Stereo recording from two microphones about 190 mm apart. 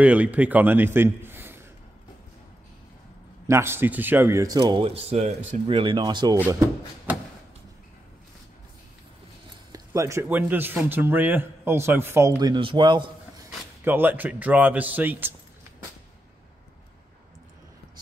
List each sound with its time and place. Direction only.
0.0 s a man's voice: 10° right (ahead or behind)
3.4 s speech: 15° right (ahead or behind)
9.7 s speech: 15° right (ahead or behind)
13.8 s speech: 10° right (ahead or behind)